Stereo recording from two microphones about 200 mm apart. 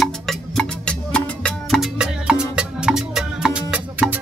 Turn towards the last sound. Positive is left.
turn(degrees=-5)  # may be behind; listen again after turning